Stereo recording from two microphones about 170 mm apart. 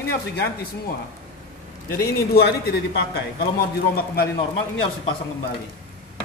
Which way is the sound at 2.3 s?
70° left (ahead or behind).